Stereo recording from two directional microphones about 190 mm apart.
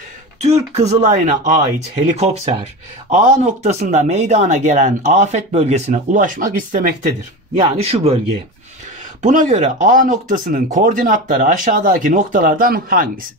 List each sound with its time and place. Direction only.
0.4 s speech: 35° right (ahead or behind)
7.5 s speech: 35° right (ahead or behind)
9.2 s speech: 40° right (ahead or behind)